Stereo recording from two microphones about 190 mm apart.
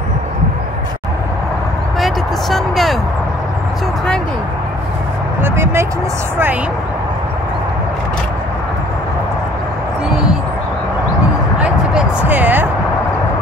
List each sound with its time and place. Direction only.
2.0 s vehicle: centre (ahead or behind)
5.4 s speech: 15° right (ahead or behind)
11.5 s a sound: 5° right (ahead or behind)